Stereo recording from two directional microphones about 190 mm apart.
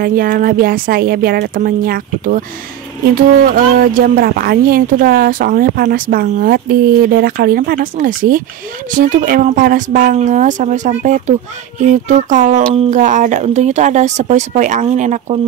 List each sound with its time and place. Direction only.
0.0 s speech: 50° right (ahead or behind)